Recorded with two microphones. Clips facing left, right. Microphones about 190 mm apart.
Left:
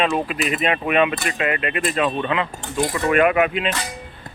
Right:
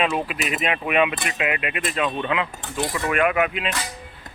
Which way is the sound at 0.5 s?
40° left (ahead or behind).